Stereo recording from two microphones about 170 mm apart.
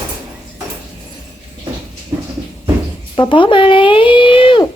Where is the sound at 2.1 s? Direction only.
15° right (ahead or behind).